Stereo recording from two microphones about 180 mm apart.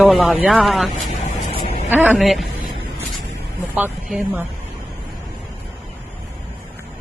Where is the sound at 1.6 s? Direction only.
35° left (ahead or behind).